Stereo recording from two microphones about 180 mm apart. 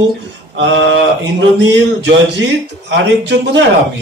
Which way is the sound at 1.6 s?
80° right.